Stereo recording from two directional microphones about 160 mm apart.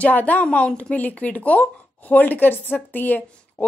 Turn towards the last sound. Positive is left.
turn(degrees=10)  # may be behind; listen again after turning